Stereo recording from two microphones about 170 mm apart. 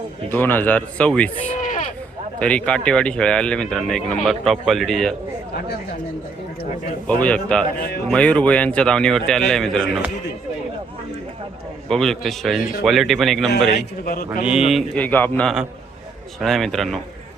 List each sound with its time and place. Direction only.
0.3 s speech: 10° left (ahead or behind)
1.5 s a sound: 50° left (ahead or behind)
2.4 s speech: 5° left (ahead or behind)
7.2 s speech: 5° left (ahead or behind)
7.8 s speech: 70° left (ahead or behind)
8.0 s speech: 5° left (ahead or behind)
11.9 s speech: 5° left (ahead or behind)
13.7 s a man's voice: 60° left (ahead or behind)
14.4 s speech: 5° right (ahead or behind)